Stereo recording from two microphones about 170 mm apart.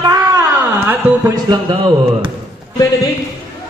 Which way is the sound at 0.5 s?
10° right (ahead or behind).